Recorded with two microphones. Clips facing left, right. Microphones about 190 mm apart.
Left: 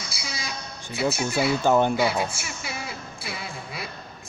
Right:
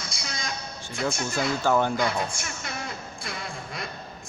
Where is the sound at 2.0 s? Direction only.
5° left (ahead or behind).